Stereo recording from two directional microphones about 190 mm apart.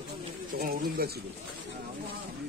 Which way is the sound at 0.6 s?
50° right (ahead or behind).